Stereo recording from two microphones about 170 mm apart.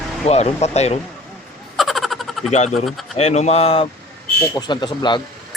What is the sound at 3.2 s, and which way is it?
Speech, 40° left (ahead or behind).